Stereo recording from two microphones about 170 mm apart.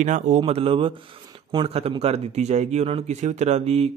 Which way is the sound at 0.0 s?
45° right (ahead or behind).